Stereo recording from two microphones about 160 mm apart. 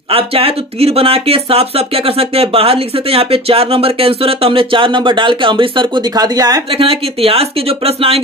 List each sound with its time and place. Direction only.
0.1 s speech: 35° right (ahead or behind)
6.7 s speech: 35° right (ahead or behind)